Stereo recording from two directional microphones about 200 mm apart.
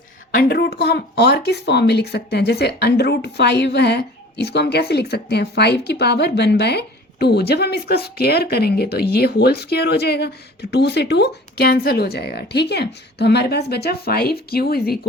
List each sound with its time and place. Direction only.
0.3 s speech: 45° left (ahead or behind)